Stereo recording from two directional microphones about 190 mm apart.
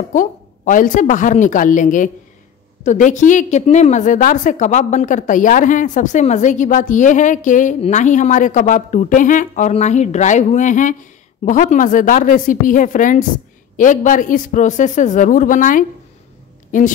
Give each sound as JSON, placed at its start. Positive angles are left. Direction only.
{"t": 0.1, "sound": "a woman's voice", "side_deg": 45}